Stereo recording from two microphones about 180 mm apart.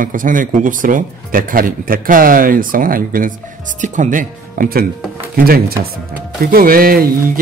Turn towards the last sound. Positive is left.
turn(degrees=-55)  # may be behind; listen again after turning